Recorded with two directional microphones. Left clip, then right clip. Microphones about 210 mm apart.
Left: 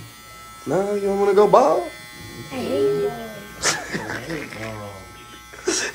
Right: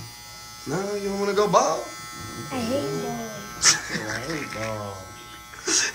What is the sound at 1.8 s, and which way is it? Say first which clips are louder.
Speech: left 1 dB; 45° right (ahead or behind).